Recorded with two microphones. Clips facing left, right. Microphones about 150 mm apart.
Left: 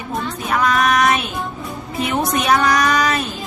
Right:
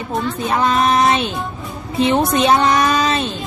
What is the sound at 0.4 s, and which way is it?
Speech, 25° right (ahead or behind).